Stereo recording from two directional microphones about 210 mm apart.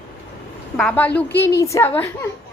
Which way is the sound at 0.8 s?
5° left (ahead or behind).